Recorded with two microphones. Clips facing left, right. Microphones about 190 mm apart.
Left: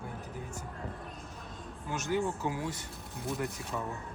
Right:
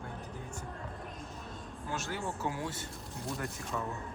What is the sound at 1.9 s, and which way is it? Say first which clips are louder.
Speech: left 7 dB; 15° left (ahead or behind).